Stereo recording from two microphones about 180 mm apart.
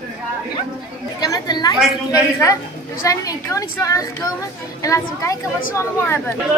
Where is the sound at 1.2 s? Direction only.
20° left (ahead or behind).